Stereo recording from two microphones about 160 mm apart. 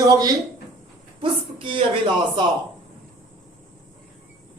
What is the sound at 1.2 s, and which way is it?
Speech, 30° right (ahead or behind).